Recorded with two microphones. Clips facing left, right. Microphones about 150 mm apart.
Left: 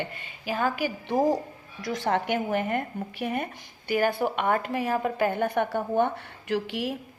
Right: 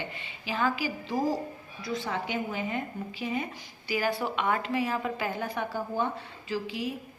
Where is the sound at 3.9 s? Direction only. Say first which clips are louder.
Left 4 dB; 55° left (ahead or behind); by 7.0 s 75° left (ahead or behind).